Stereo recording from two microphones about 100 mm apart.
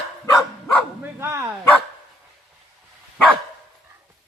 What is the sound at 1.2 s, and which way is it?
Dog, 25° right (ahead or behind).